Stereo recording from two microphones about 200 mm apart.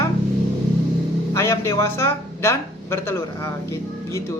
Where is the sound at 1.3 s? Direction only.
15° left (ahead or behind).